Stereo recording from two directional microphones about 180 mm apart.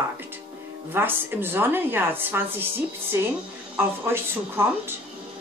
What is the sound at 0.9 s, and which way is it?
A woman's voice, 10° right (ahead or behind).